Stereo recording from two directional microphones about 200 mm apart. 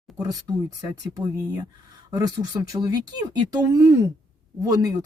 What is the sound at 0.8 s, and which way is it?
Speech, 20° right (ahead or behind).